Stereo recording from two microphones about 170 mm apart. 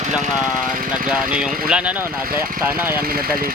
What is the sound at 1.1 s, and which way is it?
Speech, 5° right (ahead or behind).